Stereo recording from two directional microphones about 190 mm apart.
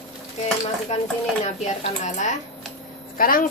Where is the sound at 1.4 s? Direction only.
40° left (ahead or behind).